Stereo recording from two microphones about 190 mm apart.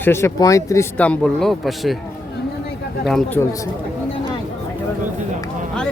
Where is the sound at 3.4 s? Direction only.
15° left (ahead or behind).